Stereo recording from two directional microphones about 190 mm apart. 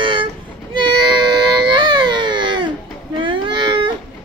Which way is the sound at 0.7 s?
25° right (ahead or behind).